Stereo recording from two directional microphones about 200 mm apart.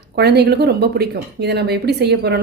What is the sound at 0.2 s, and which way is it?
A woman's voice, 55° right (ahead or behind).